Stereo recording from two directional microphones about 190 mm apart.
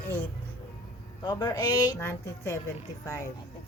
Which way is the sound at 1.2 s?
20° left (ahead or behind).